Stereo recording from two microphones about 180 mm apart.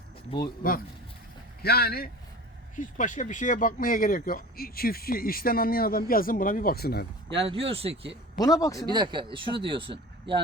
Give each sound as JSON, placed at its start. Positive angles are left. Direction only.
{"t": 1.6, "sound": "speech", "side_deg": 60}
{"t": 2.7, "sound": "speech", "side_deg": 45}
{"t": 7.3, "sound": "speech", "side_deg": -30}
{"t": 8.4, "sound": "a man's voice", "side_deg": 20}
{"t": 8.9, "sound": "speech", "side_deg": -25}